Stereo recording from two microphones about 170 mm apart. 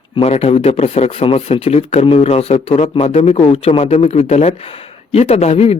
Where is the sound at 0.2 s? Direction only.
40° left (ahead or behind).